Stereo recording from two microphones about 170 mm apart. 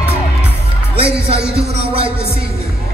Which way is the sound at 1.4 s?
75° right (ahead or behind).